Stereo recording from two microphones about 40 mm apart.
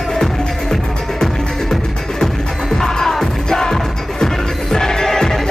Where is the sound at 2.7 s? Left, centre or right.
Centre.